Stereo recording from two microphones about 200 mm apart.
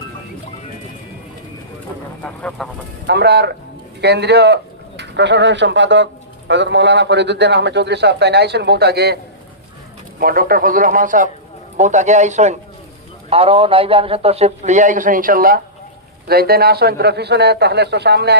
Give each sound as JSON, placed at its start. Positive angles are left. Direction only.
{"t": 2.2, "sound": "speech", "side_deg": 5}
{"t": 3.1, "sound": "a man's voice", "side_deg": -55}
{"t": 10.2, "sound": "a man's voice", "side_deg": -45}